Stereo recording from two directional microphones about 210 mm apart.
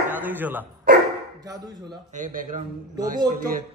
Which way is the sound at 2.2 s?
35° right (ahead or behind).